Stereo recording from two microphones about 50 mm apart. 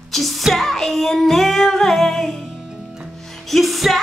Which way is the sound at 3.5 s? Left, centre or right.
Centre.